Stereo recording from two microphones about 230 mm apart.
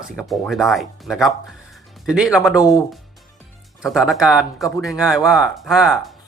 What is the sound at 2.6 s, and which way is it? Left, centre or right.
Speech, centre.